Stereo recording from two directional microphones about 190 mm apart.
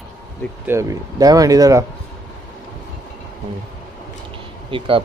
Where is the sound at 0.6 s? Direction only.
15° right (ahead or behind).